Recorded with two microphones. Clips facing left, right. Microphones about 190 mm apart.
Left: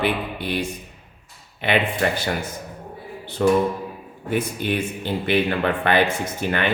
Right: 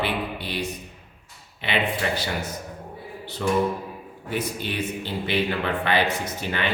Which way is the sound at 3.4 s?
55° left (ahead or behind).